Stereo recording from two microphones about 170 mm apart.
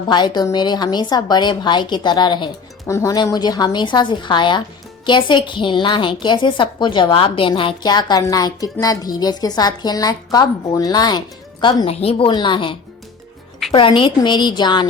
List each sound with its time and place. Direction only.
0.1 s a woman's voice: 25° left (ahead or behind)